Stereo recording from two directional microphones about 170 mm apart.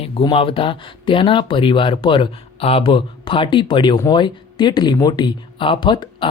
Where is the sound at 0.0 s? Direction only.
35° left (ahead or behind).